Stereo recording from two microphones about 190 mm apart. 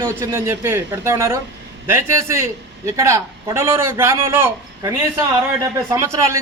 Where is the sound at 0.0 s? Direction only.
15° right (ahead or behind).